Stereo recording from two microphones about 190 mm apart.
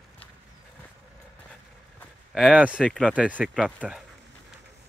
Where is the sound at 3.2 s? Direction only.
5° right (ahead or behind).